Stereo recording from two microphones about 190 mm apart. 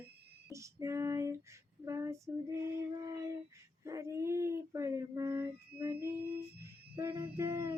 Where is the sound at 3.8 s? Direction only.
15° right (ahead or behind).